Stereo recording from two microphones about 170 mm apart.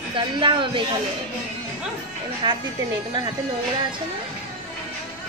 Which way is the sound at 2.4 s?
25° right (ahead or behind).